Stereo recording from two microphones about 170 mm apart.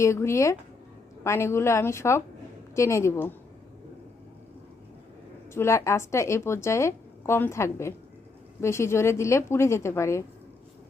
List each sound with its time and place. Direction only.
0.0 s a woman's voice: 15° left (ahead or behind)
5.5 s a woman's voice: 15° left (ahead or behind)